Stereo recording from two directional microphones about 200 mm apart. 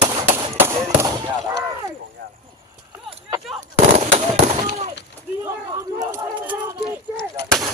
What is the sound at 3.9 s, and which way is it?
Fireworks, 35° right (ahead or behind).